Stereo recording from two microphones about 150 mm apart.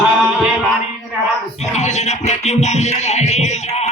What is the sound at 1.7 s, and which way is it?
Music, 50° left (ahead or behind).